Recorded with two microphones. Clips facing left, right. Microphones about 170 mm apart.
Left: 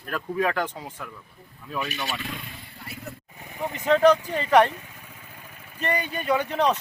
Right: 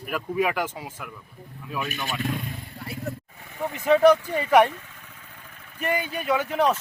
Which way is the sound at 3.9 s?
10° right (ahead or behind).